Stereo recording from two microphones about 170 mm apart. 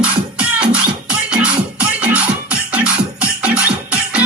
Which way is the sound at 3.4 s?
10° right (ahead or behind).